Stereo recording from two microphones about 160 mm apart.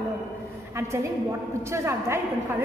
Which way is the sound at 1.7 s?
15° right (ahead or behind).